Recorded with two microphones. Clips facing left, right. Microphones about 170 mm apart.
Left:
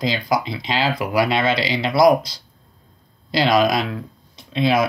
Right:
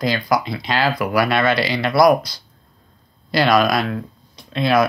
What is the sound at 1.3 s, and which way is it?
Speech, 55° right (ahead or behind).